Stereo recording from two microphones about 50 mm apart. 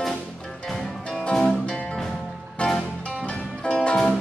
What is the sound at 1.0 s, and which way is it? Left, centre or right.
Music, centre.